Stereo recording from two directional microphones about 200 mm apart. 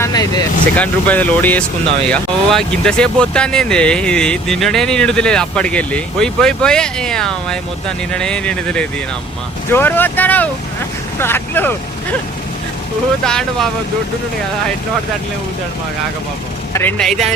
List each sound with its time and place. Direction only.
0.0 s speech: 20° left (ahead or behind)
0.8 s speech: 5° left (ahead or behind)
13.2 s speech: 5° left (ahead or behind)
16.7 s speech: 5° left (ahead or behind)